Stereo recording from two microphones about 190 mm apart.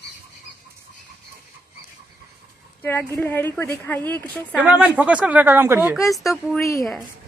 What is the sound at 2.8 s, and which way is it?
A woman's voice, 10° left (ahead or behind).